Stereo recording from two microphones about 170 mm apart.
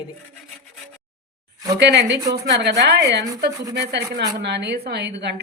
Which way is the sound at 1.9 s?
90° right.